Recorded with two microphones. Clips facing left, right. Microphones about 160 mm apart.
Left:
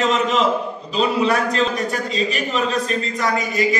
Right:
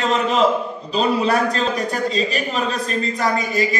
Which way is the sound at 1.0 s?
40° right (ahead or behind).